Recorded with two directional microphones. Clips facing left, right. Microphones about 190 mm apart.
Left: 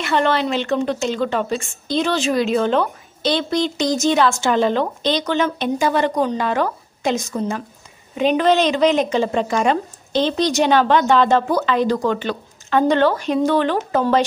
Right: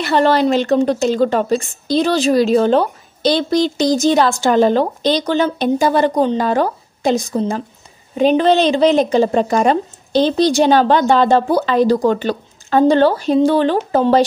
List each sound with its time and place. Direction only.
0.0 s a woman's voice: 35° right (ahead or behind)